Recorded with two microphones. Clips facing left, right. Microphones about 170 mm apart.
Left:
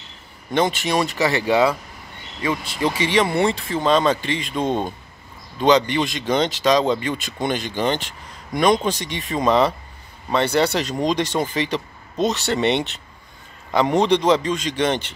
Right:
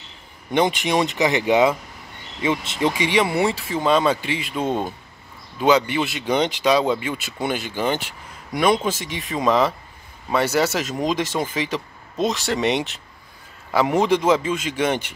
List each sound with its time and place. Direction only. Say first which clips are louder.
0.5 s speech: right 1 dB; 15° right (ahead or behind)